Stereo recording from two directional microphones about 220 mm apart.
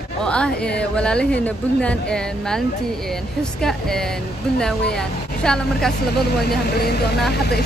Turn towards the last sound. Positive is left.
turn(degrees=45)  # may be behind; listen again after turning